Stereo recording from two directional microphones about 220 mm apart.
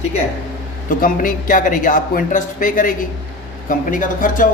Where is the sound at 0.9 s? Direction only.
40° left (ahead or behind).